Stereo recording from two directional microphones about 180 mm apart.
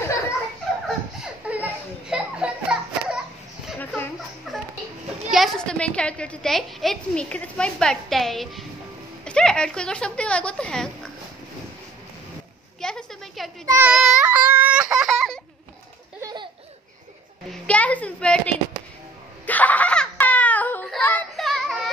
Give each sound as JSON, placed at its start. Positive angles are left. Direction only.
{"t": 0.8, "sound": "children playing", "side_deg": -5}
{"t": 3.8, "sound": "a sound", "side_deg": 10}
{"t": 4.5, "sound": "music", "side_deg": 0}
{"t": 5.3, "sound": "a woman's voice", "side_deg": 0}
{"t": 12.8, "sound": "a sound", "side_deg": 0}
{"t": 13.7, "sound": "child singing", "side_deg": -10}
{"t": 13.9, "sound": "baby cry", "side_deg": -5}
{"t": 16.2, "sound": "laughter", "side_deg": -20}
{"t": 17.6, "sound": "a sound", "side_deg": 10}
{"t": 19.4, "sound": "laughter", "side_deg": 10}